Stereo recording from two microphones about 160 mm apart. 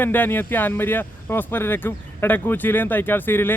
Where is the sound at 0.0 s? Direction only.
10° left (ahead or behind).